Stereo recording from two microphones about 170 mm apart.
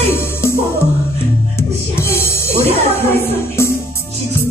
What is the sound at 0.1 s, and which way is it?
Music, 15° left (ahead or behind).